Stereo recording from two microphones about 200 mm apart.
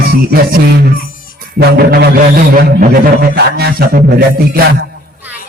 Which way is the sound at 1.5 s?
55° right (ahead or behind).